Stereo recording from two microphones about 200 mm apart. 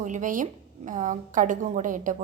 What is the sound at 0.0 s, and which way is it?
A woman's voice, 40° right (ahead or behind).